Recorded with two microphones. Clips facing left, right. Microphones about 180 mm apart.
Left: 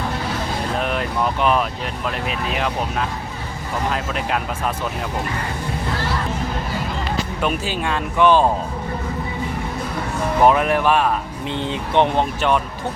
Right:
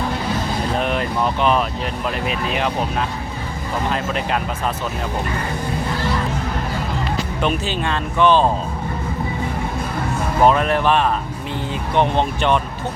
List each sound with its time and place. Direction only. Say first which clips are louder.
0.8 s speech: right 1 dB; centre (ahead or behind)
3.9 s speech: right 2 dB; centre (ahead or behind)
7.4 s speech: right 2 dB; 10° left (ahead or behind)
10.4 s speech: even; 10° left (ahead or behind)
11.7 s speech: left 1 dB; 20° left (ahead or behind)
12.1 s speech: right 1 dB; 5° left (ahead or behind)